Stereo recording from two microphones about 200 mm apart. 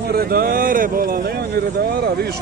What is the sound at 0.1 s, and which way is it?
Speech, 50° right (ahead or behind).